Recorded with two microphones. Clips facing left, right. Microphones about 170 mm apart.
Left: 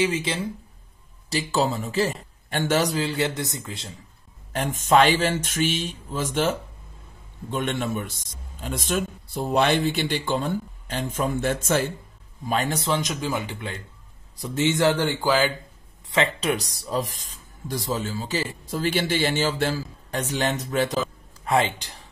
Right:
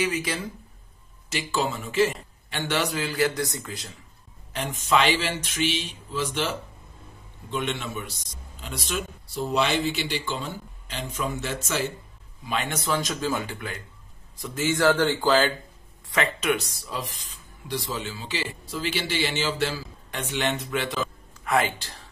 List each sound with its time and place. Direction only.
0.0 s speech: 25° left (ahead or behind)
1.3 s a man's voice: 35° left (ahead or behind)
4.5 s speech: 50° left (ahead or behind)
7.5 s speech: 50° left (ahead or behind)
12.4 s a man's voice: 40° left (ahead or behind)
12.8 s speech: 20° left (ahead or behind)
16.1 s speech: 30° left (ahead or behind)
21.5 s speech: 30° left (ahead or behind)